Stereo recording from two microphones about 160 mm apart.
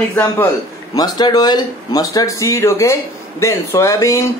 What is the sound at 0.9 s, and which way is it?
A man's voice, 25° left (ahead or behind).